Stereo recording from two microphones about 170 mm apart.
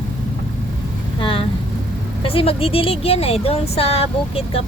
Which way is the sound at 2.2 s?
35° left (ahead or behind).